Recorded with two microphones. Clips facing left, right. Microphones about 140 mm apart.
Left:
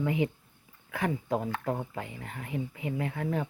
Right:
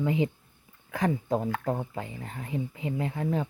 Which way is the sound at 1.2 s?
25° right (ahead or behind).